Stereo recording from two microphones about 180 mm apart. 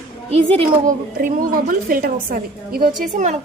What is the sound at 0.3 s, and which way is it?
Speech, 30° right (ahead or behind).